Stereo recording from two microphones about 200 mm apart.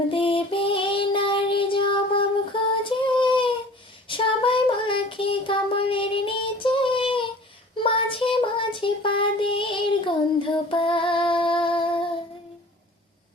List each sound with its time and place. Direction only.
0.1 s child singing: 25° left (ahead or behind)